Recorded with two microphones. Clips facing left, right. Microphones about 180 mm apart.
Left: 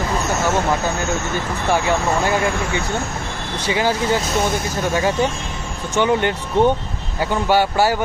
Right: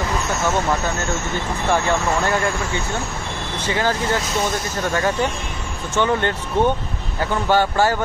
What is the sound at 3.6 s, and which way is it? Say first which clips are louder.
Speech: left 2 dB; 15° left (ahead or behind).